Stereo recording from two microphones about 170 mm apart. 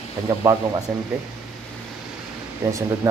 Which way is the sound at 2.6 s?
15° right (ahead or behind).